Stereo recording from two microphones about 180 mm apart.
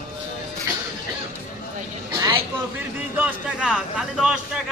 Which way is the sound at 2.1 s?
25° right (ahead or behind).